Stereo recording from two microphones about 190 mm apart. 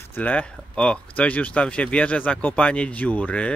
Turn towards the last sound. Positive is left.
turn(degrees=5)  # may be behind; listen again after turning